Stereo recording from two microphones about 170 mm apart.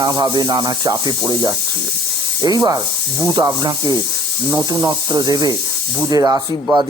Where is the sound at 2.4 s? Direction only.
20° right (ahead or behind).